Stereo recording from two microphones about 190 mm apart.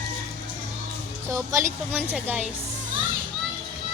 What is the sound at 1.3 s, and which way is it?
A woman's voice, 15° right (ahead or behind).